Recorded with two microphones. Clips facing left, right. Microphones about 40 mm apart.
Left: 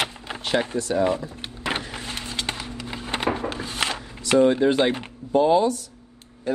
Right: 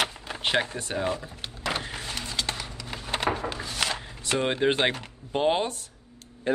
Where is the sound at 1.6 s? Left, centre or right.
Left.